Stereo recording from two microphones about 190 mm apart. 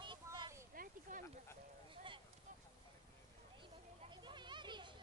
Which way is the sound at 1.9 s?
25° right (ahead or behind).